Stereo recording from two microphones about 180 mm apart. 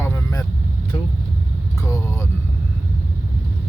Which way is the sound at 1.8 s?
15° left (ahead or behind).